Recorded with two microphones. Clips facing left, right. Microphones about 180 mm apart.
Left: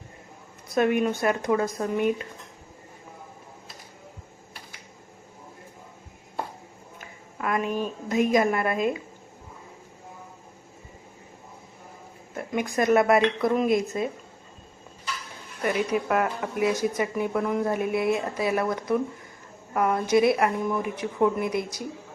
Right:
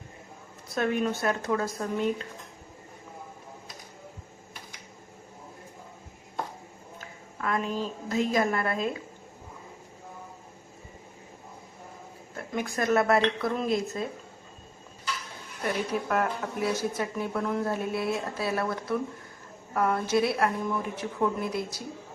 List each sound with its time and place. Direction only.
0.7 s a woman's voice: 15° left (ahead or behind)
7.0 s a woman's voice: 15° left (ahead or behind)
12.4 s a woman's voice: 15° left (ahead or behind)
15.6 s a woman's voice: 10° left (ahead or behind)